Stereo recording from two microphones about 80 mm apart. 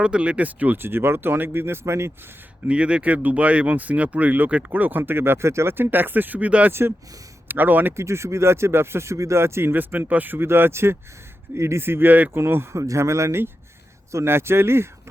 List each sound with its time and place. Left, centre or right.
0.0 s speech: centre; by 2.1 s right
2.6 s speech: centre
7.9 s speech: right